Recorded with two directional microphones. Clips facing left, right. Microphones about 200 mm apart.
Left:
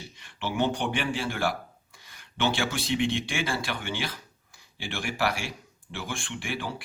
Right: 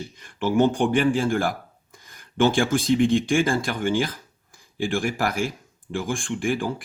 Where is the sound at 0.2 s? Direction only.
50° right (ahead or behind).